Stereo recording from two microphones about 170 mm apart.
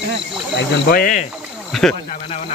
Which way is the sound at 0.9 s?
55° left (ahead or behind).